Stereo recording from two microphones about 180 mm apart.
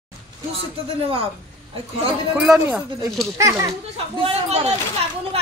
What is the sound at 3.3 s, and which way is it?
Speech, 20° right (ahead or behind).